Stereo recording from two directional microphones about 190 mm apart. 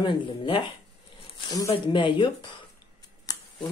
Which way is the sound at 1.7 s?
25° left (ahead or behind).